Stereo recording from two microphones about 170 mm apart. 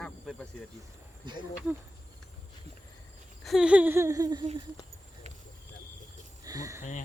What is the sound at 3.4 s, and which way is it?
Speech, centre (ahead or behind).